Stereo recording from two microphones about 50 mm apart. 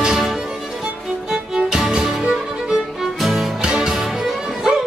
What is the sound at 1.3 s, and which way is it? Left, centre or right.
Music, centre.